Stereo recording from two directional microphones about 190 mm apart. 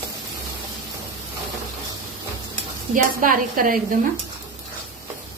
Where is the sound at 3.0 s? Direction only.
45° right (ahead or behind).